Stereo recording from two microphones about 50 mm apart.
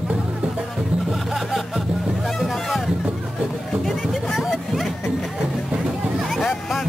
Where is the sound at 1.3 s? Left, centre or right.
Centre.